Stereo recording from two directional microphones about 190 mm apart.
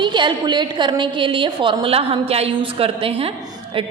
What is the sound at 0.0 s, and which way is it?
A woman's voice, 25° right (ahead or behind).